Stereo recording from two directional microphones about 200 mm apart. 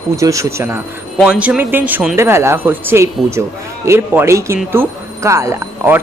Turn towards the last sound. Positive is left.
turn(degrees=-10)  # may be behind; listen again after turning